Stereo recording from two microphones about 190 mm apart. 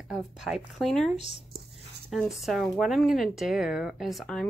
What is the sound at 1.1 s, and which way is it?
Speech, 35° left (ahead or behind).